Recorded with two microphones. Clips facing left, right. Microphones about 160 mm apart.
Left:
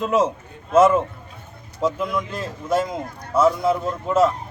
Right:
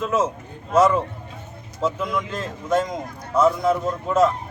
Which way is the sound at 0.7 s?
25° left (ahead or behind).